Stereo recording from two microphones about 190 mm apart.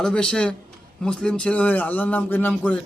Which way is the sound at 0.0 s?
5° left (ahead or behind).